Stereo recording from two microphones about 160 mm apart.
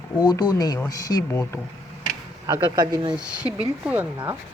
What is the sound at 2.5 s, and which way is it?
Speech, 30° right (ahead or behind).